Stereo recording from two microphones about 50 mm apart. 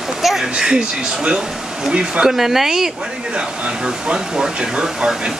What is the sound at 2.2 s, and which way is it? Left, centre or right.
Speech, centre.